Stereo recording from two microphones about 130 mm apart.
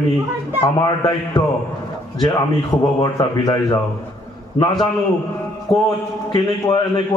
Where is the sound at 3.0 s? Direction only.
30° left (ahead or behind).